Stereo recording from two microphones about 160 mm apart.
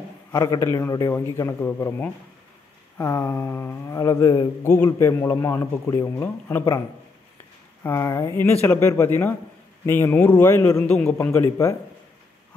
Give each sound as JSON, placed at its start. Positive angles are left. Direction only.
{"t": 0.3, "sound": "a man's voice", "side_deg": 25}
{"t": 7.8, "sound": "a man's voice", "side_deg": 15}